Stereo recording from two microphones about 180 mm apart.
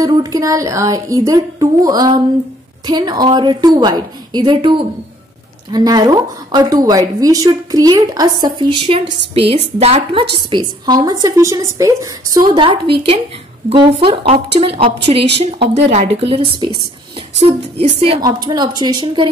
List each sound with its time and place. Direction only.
0.0 s a woman's voice: 20° right (ahead or behind); by 10.2 s 35° right (ahead or behind)
10.3 s a woman's voice: 25° right (ahead or behind)